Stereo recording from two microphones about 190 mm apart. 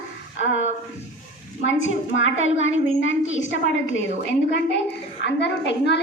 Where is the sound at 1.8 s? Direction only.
85° left.